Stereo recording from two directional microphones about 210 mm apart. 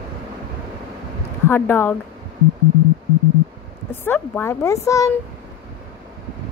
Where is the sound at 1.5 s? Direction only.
10° left (ahead or behind).